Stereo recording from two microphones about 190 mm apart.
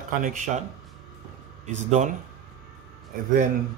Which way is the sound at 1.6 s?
40° right (ahead or behind).